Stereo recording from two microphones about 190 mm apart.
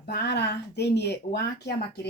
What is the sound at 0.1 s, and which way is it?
Speech, 60° left (ahead or behind).